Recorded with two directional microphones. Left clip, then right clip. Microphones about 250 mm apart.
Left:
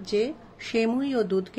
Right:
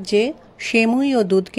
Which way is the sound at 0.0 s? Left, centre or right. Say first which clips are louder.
Right 8 dB; right.